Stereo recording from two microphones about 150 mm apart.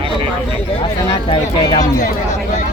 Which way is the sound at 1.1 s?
35° left (ahead or behind).